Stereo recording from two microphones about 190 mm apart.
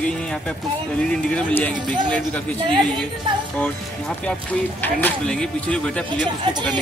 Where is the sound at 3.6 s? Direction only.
5° left (ahead or behind).